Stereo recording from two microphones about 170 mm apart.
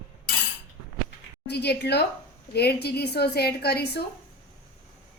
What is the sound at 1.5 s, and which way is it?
A woman's voice, 75° left (ahead or behind).